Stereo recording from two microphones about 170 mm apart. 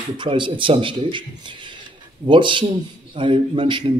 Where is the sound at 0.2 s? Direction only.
30° right (ahead or behind).